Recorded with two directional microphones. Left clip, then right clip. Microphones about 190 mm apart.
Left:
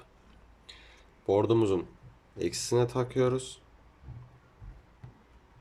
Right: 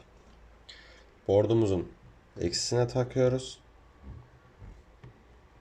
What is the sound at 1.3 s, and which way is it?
Speech, 20° left (ahead or behind).